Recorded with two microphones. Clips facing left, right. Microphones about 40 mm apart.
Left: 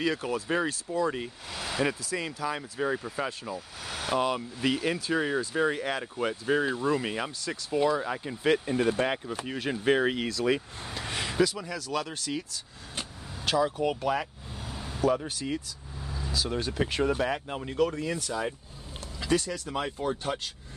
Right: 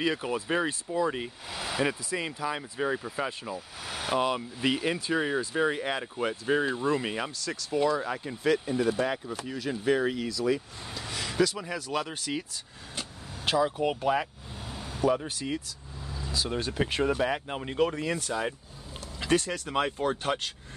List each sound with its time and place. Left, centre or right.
0.0 s speech: centre
7.3 s speech: centre
8.5 s speech: left
10.2 s speech: left
11.6 s speech: centre
13.6 s speech: centre
17.5 s speech: right
17.7 s speech: right